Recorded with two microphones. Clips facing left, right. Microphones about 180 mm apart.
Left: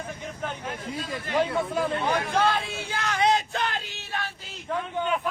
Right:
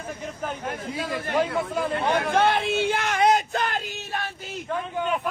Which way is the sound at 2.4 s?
25° right (ahead or behind).